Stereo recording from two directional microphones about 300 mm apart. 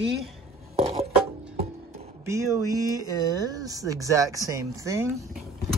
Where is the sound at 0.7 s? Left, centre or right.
Centre.